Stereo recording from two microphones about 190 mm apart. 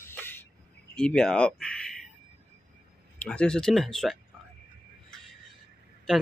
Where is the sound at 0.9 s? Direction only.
5° left (ahead or behind).